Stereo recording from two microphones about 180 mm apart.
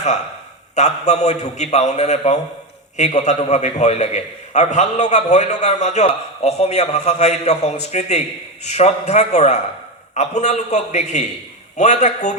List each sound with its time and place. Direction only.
0.8 s a man's voice: 40° left (ahead or behind)